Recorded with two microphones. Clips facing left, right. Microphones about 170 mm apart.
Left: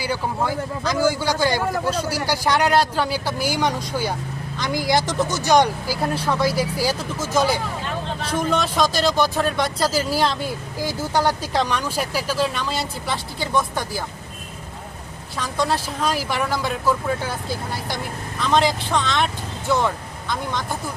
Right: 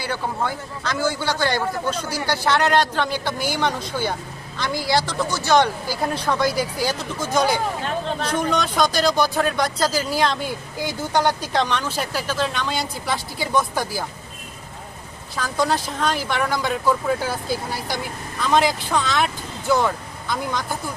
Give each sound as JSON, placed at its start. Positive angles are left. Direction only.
{"t": 0.0, "sound": "a man's voice", "side_deg": 10}
{"t": 5.9, "sound": "speech", "side_deg": 5}
{"t": 15.4, "sound": "speech", "side_deg": 0}